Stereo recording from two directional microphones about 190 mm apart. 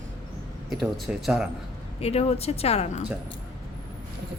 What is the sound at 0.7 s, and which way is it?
Speech, centre (ahead or behind).